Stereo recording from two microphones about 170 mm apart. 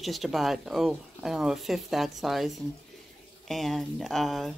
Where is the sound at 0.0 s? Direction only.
Centre (ahead or behind).